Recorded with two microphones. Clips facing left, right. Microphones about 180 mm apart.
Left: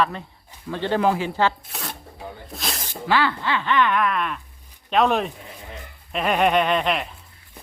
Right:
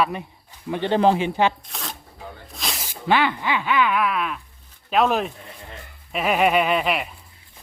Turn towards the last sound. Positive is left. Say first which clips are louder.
# even
turn(degrees=-5)  # may be behind; listen again after turning